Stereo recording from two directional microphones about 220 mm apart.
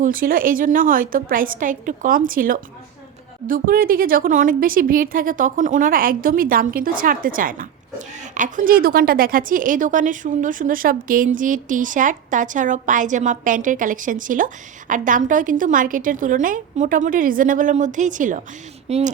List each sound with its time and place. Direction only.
0.0 s a woman's voice: 40° right (ahead or behind)